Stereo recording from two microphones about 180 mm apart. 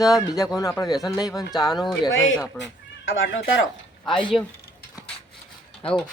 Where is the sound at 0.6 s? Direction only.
15° left (ahead or behind).